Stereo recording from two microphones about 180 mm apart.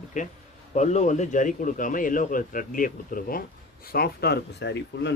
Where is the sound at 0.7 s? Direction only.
40° left (ahead or behind).